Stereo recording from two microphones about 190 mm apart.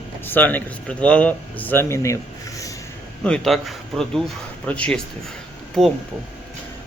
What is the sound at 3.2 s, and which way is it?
Speech, 5° left (ahead or behind).